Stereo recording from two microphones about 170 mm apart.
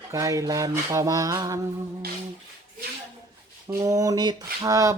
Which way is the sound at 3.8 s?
20° right (ahead or behind).